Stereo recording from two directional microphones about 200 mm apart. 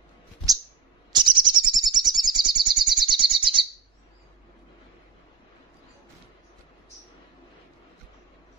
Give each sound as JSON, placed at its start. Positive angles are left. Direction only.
{"t": 1.1, "sound": "bird", "side_deg": -20}